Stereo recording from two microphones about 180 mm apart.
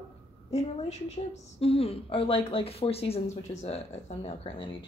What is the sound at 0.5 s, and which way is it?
A woman's voice, 40° left (ahead or behind).